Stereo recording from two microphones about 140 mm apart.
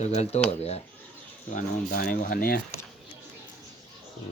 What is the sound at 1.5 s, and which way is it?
Speech, 80° left.